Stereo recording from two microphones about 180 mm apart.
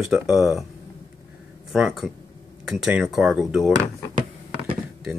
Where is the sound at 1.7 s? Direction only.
5° right (ahead or behind).